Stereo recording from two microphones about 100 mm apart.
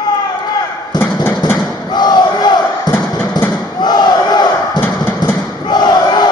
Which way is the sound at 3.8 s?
45° left (ahead or behind).